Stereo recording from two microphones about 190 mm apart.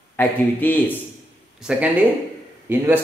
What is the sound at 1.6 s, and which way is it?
A man's voice, 5° right (ahead or behind).